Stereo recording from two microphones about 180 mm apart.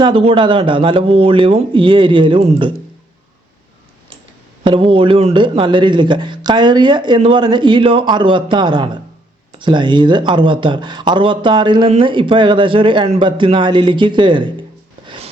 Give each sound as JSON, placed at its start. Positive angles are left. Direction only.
{"t": 0.0, "sound": "speech", "side_deg": -30}
{"t": 4.6, "sound": "speech", "side_deg": -30}
{"t": 15.0, "sound": "a sound", "side_deg": -30}